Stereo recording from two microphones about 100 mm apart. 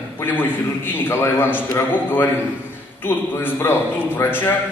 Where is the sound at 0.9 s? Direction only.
25° left (ahead or behind).